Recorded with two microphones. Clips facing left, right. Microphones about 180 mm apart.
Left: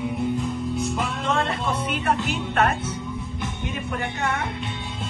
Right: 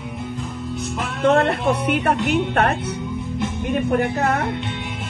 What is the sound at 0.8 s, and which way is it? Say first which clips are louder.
Music: left 1 dB; centre (ahead or behind).